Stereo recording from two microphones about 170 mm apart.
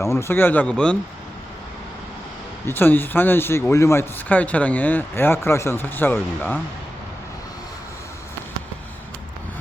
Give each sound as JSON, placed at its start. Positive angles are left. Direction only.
{"t": 0.0, "sound": "speech", "side_deg": 15}
{"t": 2.6, "sound": "speech", "side_deg": 10}